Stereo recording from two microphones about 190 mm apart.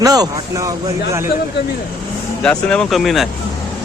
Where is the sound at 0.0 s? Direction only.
20° right (ahead or behind).